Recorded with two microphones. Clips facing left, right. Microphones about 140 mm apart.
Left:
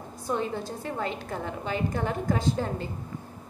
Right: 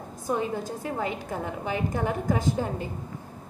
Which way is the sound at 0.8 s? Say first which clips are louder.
Right 1 dB; 10° right (ahead or behind).